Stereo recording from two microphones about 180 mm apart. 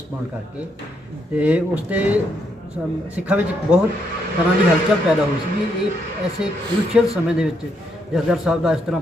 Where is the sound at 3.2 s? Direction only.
5° right (ahead or behind).